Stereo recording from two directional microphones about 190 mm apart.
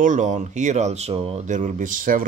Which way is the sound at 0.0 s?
40° right (ahead or behind).